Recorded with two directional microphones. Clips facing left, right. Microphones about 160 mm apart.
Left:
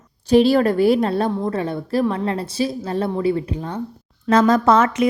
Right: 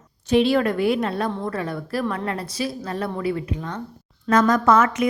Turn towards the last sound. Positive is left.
turn(degrees=30)  # may be behind; listen again after turning